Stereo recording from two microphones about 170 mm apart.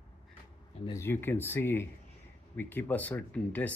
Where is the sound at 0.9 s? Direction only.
15° left (ahead or behind).